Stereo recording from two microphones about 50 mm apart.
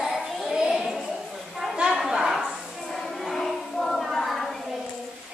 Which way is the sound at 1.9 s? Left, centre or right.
Centre.